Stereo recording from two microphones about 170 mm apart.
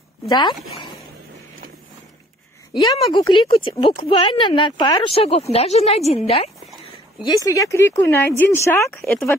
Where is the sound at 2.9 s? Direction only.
30° left (ahead or behind).